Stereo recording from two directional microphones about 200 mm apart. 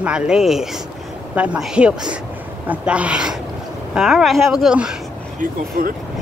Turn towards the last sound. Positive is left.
turn(degrees=-45)  # may be behind; listen again after turning